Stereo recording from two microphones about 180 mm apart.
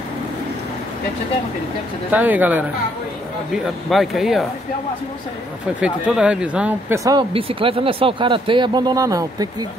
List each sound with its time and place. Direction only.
2.0 s speech: 10° right (ahead or behind)
5.8 s speech: 5° right (ahead or behind)
7.0 s speech: 20° right (ahead or behind)
7.3 s speech: 30° right (ahead or behind)